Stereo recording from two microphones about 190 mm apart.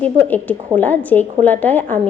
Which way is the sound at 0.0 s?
10° left (ahead or behind).